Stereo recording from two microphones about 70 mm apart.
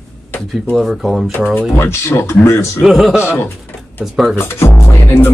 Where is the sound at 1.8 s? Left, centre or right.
Left.